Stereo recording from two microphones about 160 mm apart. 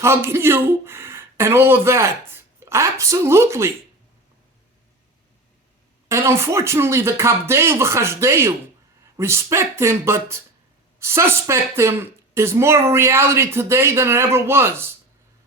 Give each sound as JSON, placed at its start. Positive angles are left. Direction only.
{"t": 0.0, "sound": "speech", "side_deg": -15}
{"t": 6.1, "sound": "speech", "side_deg": -20}